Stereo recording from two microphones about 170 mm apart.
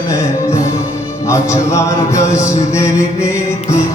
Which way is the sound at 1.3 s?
15° left (ahead or behind).